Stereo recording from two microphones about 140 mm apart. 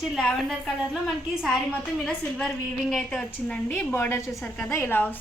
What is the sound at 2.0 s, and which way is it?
A woman's voice, 5° left (ahead or behind).